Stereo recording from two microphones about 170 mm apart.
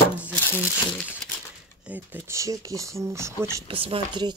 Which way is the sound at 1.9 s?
10° right (ahead or behind).